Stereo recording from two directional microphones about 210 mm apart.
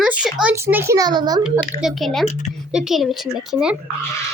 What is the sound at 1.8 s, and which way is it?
A woman's voice, centre (ahead or behind).